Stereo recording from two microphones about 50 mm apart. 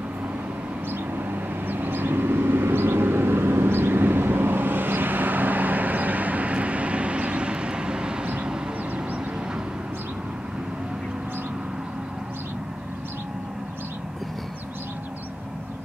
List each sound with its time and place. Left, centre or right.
1.1 s vehicle: right